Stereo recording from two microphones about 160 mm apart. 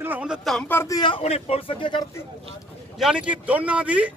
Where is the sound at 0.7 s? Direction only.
15° left (ahead or behind).